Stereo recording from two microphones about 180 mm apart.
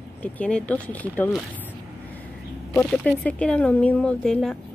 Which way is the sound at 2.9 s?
5° left (ahead or behind).